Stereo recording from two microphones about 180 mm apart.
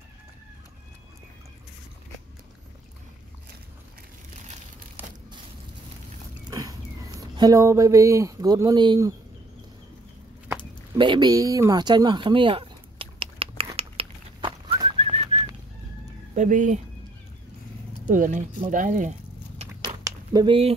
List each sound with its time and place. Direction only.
6.5 s speech: 20° right (ahead or behind)
11.0 s speech: 25° right (ahead or behind)
13.7 s bird: 30° right (ahead or behind)
16.3 s speech: 45° right (ahead or behind)
18.0 s speech: 45° right (ahead or behind)
19.6 s biting: 35° right (ahead or behind)
20.0 s a sound: 20° right (ahead or behind)